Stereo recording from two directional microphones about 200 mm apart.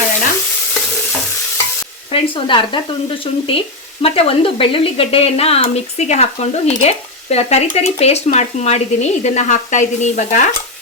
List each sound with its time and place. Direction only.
2.1 s speech: 25° left (ahead or behind)